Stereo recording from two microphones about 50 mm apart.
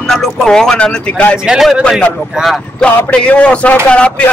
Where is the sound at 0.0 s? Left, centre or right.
Centre.